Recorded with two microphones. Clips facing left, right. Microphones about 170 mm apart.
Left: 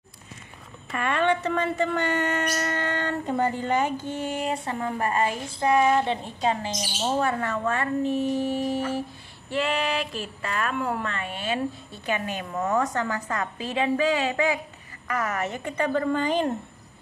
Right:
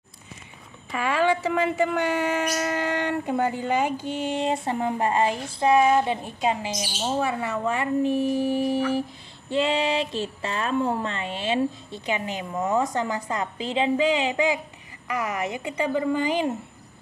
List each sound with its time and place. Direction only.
0.9 s speech: 5° right (ahead or behind)